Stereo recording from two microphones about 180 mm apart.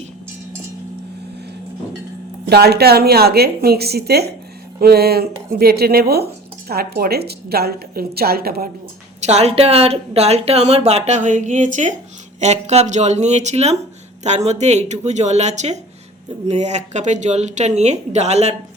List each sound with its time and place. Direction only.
2.5 s a woman's voice: 65° right (ahead or behind)
9.2 s speech: 35° right (ahead or behind)